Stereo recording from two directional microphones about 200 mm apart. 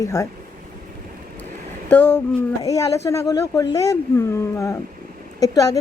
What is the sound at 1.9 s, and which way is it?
Speech, 10° left (ahead or behind).